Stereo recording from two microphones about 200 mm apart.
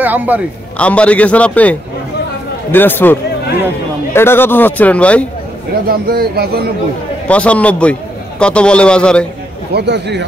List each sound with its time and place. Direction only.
0.0 s a man's voice: 10° right (ahead or behind)
0.7 s speech: 5° left (ahead or behind)
5.9 s speech: 50° right (ahead or behind)
7.2 s a man's voice: 5° left (ahead or behind)
9.7 s a man's voice: 55° right (ahead or behind)